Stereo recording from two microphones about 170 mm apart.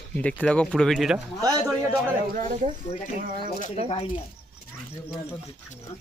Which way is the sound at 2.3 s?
45° right (ahead or behind).